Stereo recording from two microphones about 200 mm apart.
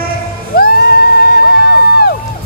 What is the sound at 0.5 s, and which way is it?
Crowd, 50° left (ahead or behind).